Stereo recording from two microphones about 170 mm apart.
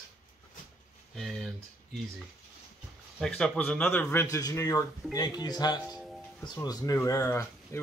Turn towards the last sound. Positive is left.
turn(degrees=15)  # may be behind; listen again after turning